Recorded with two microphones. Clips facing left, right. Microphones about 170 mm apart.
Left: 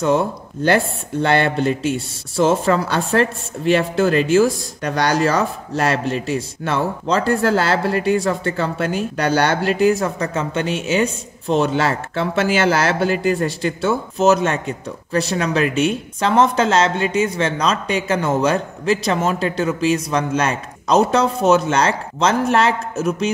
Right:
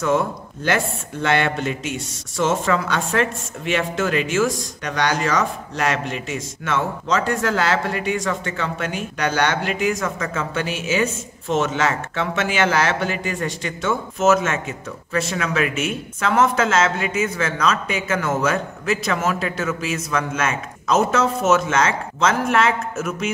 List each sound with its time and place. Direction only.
0.0 s speech: 30° left (ahead or behind)